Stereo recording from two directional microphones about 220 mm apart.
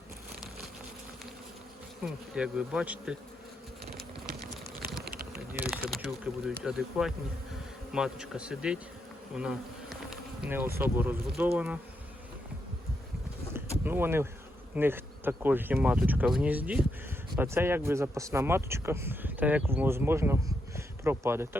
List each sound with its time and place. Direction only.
2.0 s speech: 5° right (ahead or behind)
3.9 s a sound: 45° right (ahead or behind)
5.9 s speech: centre (ahead or behind)
9.3 s bee: 5° right (ahead or behind)
13.8 s speech: 10° right (ahead or behind)